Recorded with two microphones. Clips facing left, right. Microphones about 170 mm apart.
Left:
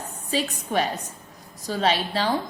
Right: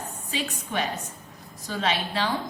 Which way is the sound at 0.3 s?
40° left (ahead or behind).